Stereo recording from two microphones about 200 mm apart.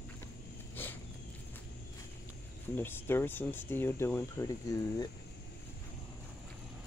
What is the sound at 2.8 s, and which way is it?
Speech, 10° left (ahead or behind).